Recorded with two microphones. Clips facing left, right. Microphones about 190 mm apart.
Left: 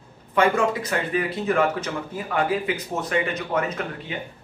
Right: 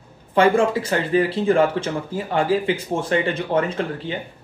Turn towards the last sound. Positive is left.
turn(degrees=-30)  # may be behind; listen again after turning